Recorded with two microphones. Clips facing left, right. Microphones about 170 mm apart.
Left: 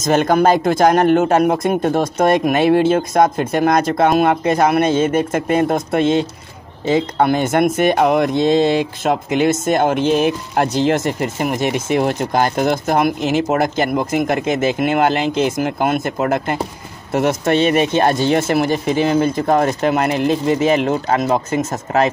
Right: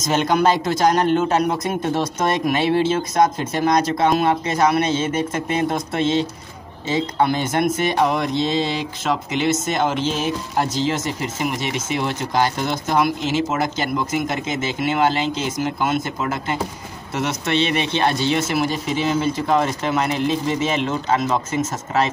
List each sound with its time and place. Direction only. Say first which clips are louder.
0.0 s speech: left 4 dB; 50° left (ahead or behind)